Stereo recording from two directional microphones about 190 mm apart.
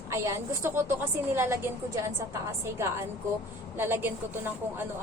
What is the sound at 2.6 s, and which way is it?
A woman's voice, 15° right (ahead or behind).